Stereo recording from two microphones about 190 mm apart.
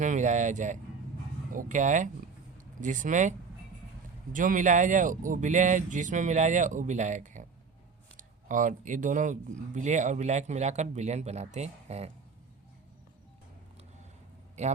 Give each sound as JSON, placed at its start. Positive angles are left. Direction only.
{"t": 0.0, "sound": "speech", "side_deg": -40}